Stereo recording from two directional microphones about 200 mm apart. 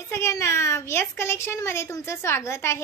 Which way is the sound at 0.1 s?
15° left (ahead or behind).